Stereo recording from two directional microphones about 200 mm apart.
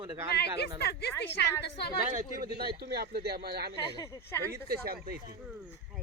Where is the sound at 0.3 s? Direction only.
55° left (ahead or behind).